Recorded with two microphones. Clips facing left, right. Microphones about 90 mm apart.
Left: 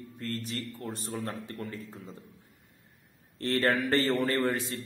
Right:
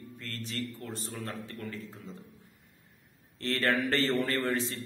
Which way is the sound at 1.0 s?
50° left (ahead or behind).